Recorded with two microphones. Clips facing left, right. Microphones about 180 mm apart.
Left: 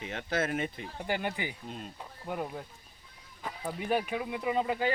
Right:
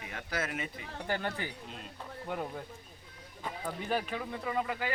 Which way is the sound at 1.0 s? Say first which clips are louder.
Left 2 dB; 15° left (ahead or behind).